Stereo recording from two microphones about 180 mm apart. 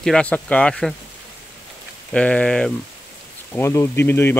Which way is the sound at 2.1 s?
5° left (ahead or behind).